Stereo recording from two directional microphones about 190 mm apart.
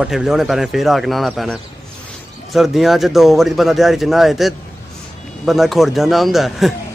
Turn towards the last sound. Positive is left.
turn(degrees=0)  # may be behind; listen again after turning